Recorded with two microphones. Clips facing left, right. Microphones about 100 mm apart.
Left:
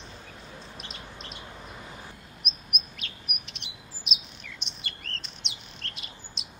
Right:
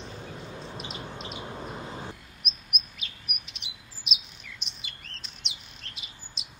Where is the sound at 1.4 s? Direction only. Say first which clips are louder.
Right 6 dB; 30° right (ahead or behind).